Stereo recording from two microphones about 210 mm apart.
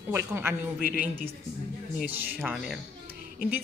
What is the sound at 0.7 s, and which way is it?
Speech, 45° left (ahead or behind).